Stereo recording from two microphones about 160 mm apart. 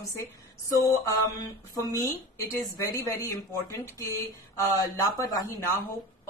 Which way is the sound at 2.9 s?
15° left (ahead or behind).